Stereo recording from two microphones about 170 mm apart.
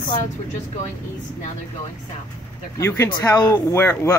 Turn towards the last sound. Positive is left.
turn(degrees=15)  # may be behind; listen again after turning